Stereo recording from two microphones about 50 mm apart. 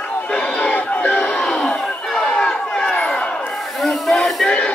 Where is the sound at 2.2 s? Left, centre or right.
Centre.